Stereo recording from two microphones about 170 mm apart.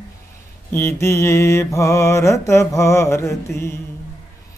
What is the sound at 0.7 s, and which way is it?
Mantra, 15° left (ahead or behind).